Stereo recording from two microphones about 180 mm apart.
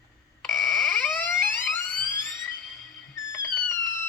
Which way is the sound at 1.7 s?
10° left (ahead or behind).